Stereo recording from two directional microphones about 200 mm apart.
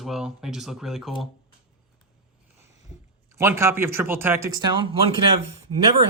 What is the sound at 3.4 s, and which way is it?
Speech, 15° right (ahead or behind).